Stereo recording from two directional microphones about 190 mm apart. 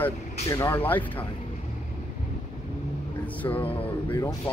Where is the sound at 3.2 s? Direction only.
10° left (ahead or behind).